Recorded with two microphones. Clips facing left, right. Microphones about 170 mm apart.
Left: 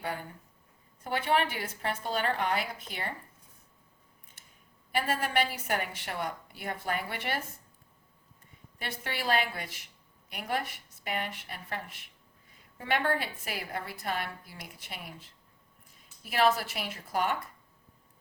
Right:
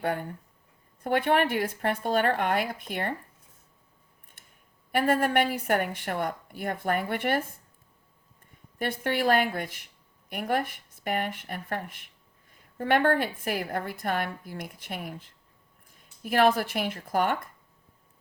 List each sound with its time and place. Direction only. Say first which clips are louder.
0.0 s a woman's voice: right 7 dB; 55° right (ahead or behind)
4.9 s a woman's voice: right 7 dB; 55° right (ahead or behind)
8.8 s a woman's voice: right 10 dB; 50° right (ahead or behind)